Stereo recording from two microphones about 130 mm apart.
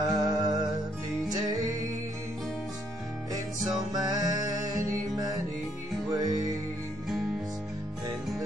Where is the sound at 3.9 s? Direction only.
30° right (ahead or behind).